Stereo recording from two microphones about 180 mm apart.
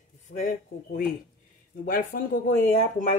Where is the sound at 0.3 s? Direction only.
50° left (ahead or behind).